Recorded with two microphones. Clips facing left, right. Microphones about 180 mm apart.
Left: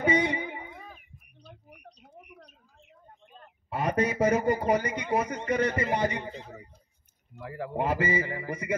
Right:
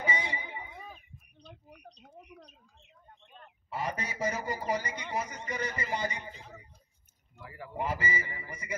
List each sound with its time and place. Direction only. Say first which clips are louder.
0.0 s a sound: left 10 dB; 60° left (ahead or behind)
2.2 s bird: left 1 dB; 25° right (ahead or behind)
3.7 s a man's voice: left 9 dB; 60° left (ahead or behind)
7.3 s a man's voice: left 7 dB; 55° left (ahead or behind)